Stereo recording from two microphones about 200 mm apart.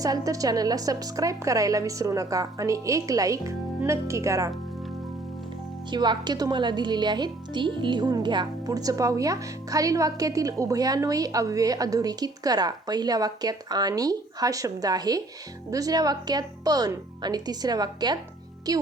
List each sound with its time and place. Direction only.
0.0 s a woman's voice: 15° right (ahead or behind)
5.9 s speech: 20° right (ahead or behind)